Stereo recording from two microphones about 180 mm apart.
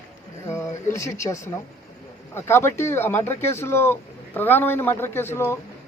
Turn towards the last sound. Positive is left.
turn(degrees=15)  # may be behind; listen again after turning